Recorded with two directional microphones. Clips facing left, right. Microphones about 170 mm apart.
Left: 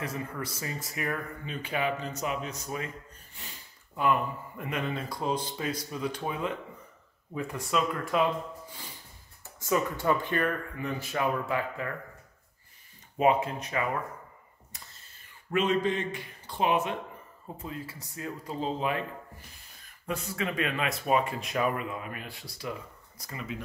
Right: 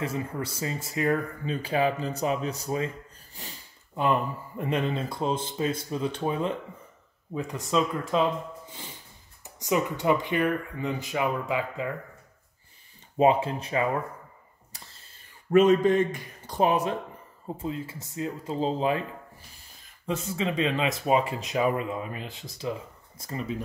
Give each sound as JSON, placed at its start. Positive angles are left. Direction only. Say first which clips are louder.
{"t": 0.0, "sound": "speech", "louder": "right 4 dB", "side_deg": -30}
{"t": 9.4, "sound": "speech", "louder": "right 2 dB", "side_deg": -20}
{"t": 13.2, "sound": "speech", "louder": "right 3 dB", "side_deg": -30}
{"t": 14.7, "sound": "a sound", "louder": "right 2 dB", "side_deg": -30}
{"t": 15.5, "sound": "speech", "louder": "right 8 dB", "side_deg": -45}
{"t": 17.6, "sound": "speech", "louder": "right 6 dB", "side_deg": -25}
{"t": 20.1, "sound": "speech", "louder": "right 4 dB", "side_deg": -25}